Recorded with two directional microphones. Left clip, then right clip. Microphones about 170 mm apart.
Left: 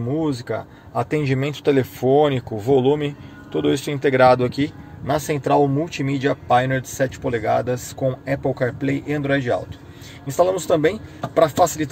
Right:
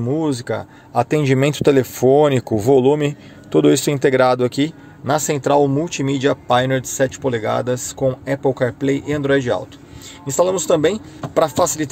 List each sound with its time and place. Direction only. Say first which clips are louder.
0.1 s speech: right 3 dB; 40° right (ahead or behind)
1.2 s speech: right 6 dB; 55° right (ahead or behind); by 11.9 s 35° right (ahead or behind)